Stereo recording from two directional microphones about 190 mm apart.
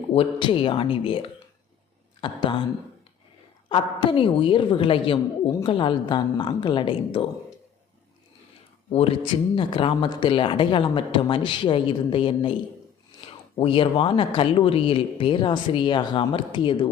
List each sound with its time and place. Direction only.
0.1 s speech: 30° left (ahead or behind)
3.7 s speech: 30° left (ahead or behind)
8.9 s speech: 30° left (ahead or behind)